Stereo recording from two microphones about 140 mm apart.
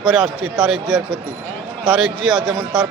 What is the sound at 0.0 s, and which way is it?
A man's voice, centre (ahead or behind).